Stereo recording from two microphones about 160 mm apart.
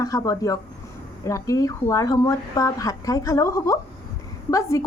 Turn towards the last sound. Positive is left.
turn(degrees=20)  # may be behind; listen again after turning